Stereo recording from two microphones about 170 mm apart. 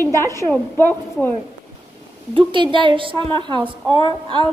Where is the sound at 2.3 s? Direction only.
30° right (ahead or behind).